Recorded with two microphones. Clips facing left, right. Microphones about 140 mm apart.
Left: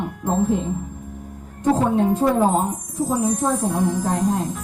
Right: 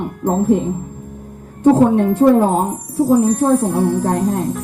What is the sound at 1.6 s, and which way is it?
Speech, 60° right (ahead or behind).